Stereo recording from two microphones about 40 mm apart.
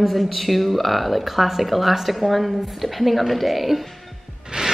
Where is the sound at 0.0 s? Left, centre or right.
Centre.